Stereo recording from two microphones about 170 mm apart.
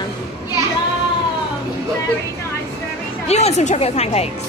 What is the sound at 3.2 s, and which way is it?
Speech, 40° left (ahead or behind).